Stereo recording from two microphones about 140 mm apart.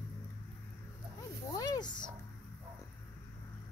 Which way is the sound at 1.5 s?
30° left (ahead or behind).